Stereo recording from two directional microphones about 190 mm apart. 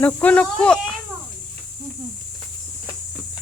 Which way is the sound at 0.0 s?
5° left (ahead or behind).